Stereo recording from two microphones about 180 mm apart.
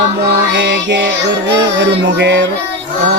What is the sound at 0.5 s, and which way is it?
Music, 85° right.